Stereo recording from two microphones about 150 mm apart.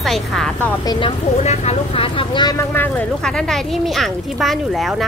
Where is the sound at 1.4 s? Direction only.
45° left (ahead or behind).